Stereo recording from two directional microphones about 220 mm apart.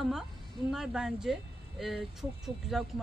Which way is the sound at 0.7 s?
Centre (ahead or behind).